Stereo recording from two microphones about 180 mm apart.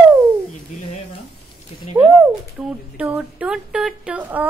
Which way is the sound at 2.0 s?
10° right (ahead or behind).